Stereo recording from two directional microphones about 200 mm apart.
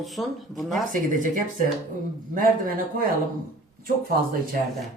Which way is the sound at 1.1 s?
40° right (ahead or behind).